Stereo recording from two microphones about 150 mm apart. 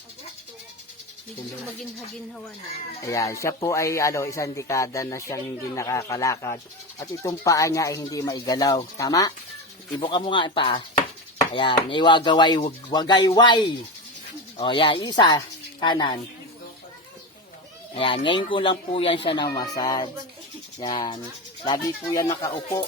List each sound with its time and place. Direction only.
3.0 s speech: 20° left (ahead or behind)
17.9 s speech: 35° left (ahead or behind)
19.5 s speech: 25° left (ahead or behind)